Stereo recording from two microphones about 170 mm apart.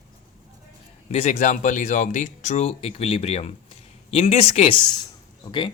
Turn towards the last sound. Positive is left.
turn(degrees=25)  # may be behind; listen again after turning